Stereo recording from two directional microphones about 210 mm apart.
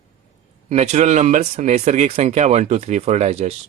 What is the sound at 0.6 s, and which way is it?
Speech, 30° right (ahead or behind).